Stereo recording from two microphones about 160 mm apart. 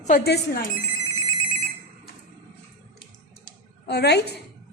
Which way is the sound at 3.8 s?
90° left.